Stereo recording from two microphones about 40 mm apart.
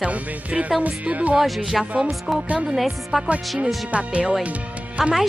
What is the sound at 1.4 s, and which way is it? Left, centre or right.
Speech, centre.